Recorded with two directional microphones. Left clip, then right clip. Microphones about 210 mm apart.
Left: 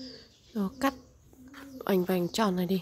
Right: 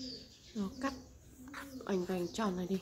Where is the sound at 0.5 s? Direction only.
50° left (ahead or behind).